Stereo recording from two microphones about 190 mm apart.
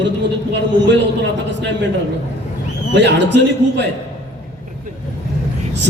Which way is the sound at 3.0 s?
65° right (ahead or behind).